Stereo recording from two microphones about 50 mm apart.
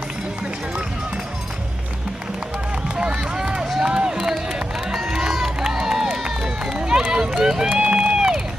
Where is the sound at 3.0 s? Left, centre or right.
Centre.